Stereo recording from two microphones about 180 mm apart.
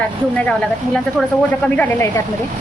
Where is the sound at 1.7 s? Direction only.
10° left (ahead or behind).